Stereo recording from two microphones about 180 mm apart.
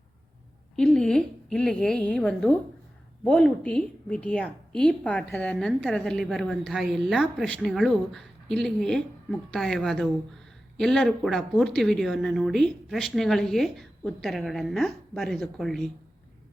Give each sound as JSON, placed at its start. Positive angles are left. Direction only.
{"t": 0.8, "sound": "a woman's voice", "side_deg": 5}